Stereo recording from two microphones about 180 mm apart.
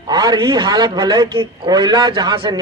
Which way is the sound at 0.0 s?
20° right (ahead or behind).